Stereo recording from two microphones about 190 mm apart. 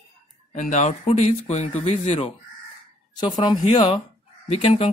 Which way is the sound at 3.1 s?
25° left (ahead or behind).